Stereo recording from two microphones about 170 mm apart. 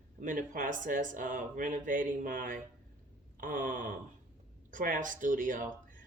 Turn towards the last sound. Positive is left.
turn(degrees=-50)  # may be behind; listen again after turning